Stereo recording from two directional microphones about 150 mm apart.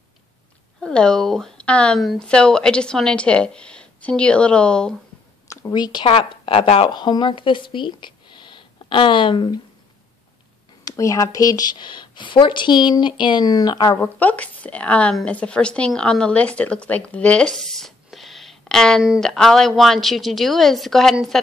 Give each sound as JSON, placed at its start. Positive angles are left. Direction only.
{"t": 0.7, "sound": "speech", "side_deg": 5}
{"t": 5.5, "sound": "speech", "side_deg": 25}
{"t": 10.8, "sound": "speech", "side_deg": 25}
{"t": 13.9, "sound": "speech", "side_deg": 10}